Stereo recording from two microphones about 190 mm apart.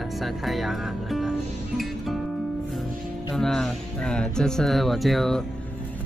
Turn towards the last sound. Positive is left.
turn(degrees=0)  # may be behind; listen again after turning